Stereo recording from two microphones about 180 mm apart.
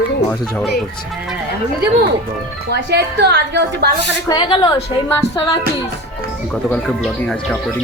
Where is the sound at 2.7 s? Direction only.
70° right (ahead or behind).